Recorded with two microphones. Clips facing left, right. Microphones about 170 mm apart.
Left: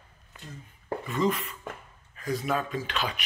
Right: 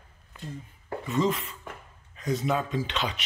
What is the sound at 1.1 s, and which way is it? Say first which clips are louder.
Speech: right 1 dB; 25° right (ahead or behind).